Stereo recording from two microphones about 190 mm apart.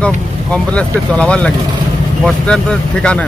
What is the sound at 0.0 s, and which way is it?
Speech, 5° left (ahead or behind).